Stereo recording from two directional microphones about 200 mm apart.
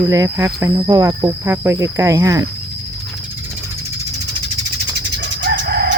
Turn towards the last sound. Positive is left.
turn(degrees=-55)  # may be behind; listen again after turning